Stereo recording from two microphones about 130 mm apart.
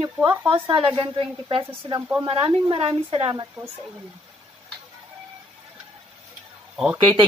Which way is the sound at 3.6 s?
30° right (ahead or behind).